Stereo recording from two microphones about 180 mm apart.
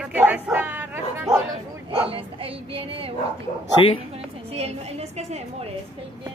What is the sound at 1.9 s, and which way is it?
Speech, 30° right (ahead or behind).